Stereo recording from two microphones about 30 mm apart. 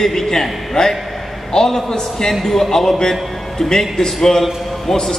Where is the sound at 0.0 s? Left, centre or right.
Centre.